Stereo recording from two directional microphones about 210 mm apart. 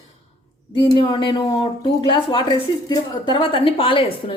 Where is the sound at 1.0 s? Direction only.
20° left (ahead or behind).